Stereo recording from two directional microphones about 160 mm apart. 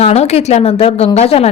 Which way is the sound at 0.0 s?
40° left (ahead or behind).